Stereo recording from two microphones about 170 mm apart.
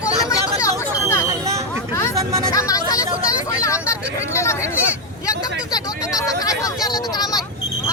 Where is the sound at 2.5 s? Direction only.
20° left (ahead or behind).